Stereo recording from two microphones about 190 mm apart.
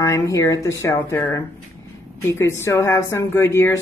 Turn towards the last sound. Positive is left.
turn(degrees=15)  # may be behind; listen again after turning